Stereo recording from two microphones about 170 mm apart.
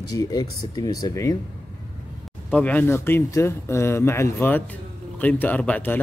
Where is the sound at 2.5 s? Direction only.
10° left (ahead or behind).